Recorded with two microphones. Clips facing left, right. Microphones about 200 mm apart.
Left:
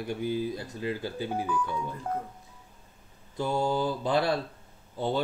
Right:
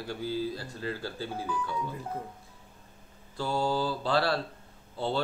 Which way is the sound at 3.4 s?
20° left (ahead or behind).